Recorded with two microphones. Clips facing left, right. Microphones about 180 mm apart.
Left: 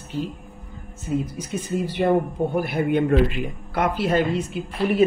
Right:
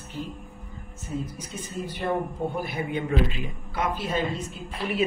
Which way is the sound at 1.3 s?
85° left.